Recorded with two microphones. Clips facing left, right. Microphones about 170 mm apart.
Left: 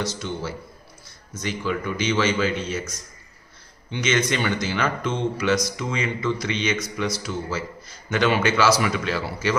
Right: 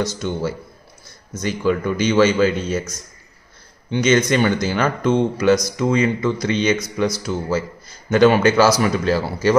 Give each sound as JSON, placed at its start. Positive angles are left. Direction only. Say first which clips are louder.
{"t": 0.0, "sound": "a man's voice", "louder": "right 6 dB", "side_deg": -45}
{"t": 3.9, "sound": "speech", "louder": "right 7 dB", "side_deg": -40}